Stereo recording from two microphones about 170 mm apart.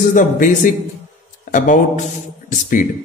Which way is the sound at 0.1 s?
50° left (ahead or behind).